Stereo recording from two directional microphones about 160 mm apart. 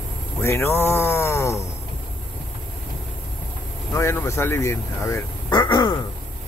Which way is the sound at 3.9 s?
15° left (ahead or behind).